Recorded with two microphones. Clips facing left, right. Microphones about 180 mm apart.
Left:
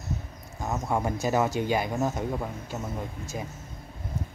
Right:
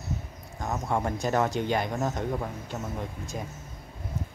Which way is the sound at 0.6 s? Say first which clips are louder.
Left 1 dB; 5° left (ahead or behind).